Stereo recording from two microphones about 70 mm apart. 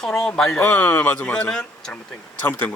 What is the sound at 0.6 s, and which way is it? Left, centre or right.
A man's voice, left.